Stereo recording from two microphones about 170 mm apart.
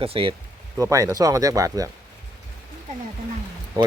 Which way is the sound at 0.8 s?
20° right (ahead or behind).